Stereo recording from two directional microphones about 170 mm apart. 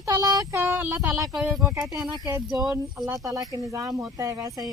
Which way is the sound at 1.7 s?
20° right (ahead or behind).